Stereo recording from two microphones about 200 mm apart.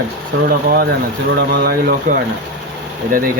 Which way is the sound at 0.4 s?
50° right (ahead or behind).